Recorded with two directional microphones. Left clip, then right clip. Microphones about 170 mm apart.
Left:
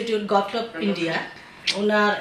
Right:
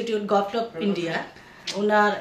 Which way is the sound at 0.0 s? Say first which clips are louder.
Left 1 dB; 40° right (ahead or behind).